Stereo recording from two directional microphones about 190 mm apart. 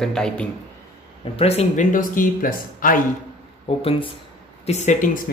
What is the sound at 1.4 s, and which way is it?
Speech, 35° left (ahead or behind).